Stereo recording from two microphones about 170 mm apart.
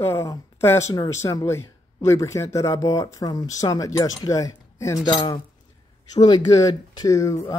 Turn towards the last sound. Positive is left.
turn(degrees=15)  # may be behind; listen again after turning